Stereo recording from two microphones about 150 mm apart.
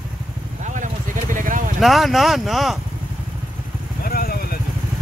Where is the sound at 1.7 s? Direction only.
Centre (ahead or behind).